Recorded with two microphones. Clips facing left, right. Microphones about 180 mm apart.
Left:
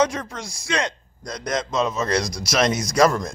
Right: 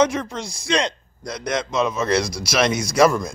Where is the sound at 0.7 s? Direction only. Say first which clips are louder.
Right 3 dB; 20° right (ahead or behind).